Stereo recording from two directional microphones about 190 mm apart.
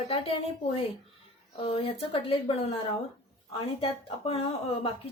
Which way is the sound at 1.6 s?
30° left (ahead or behind).